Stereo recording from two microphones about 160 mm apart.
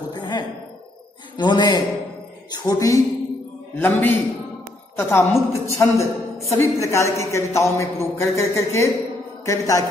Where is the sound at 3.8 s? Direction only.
10° left (ahead or behind).